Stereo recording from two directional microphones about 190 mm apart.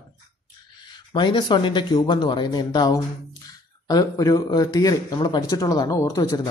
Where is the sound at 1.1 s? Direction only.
25° left (ahead or behind).